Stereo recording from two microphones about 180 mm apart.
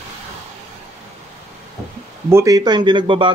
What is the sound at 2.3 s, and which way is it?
Speech, 15° right (ahead or behind).